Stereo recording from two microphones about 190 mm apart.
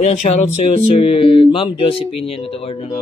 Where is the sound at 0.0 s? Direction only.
35° left (ahead or behind).